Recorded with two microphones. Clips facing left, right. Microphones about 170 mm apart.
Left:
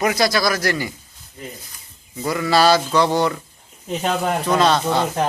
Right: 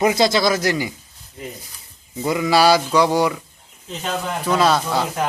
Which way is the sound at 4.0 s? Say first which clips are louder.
Left 4 dB; 55° left (ahead or behind).